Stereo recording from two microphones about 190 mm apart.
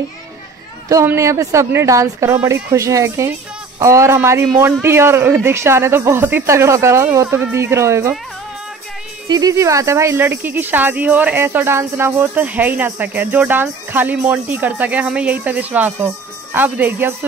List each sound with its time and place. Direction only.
0.8 s speech: 15° right (ahead or behind)
9.3 s speech: 20° right (ahead or behind)